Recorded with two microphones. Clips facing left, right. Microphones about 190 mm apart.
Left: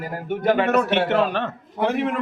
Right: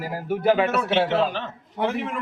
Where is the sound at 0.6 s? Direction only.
60° left (ahead or behind).